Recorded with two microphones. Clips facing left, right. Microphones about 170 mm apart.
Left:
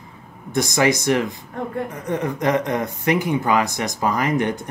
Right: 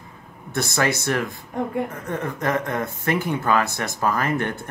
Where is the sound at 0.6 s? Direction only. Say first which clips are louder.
Left 4 dB; 15° left (ahead or behind).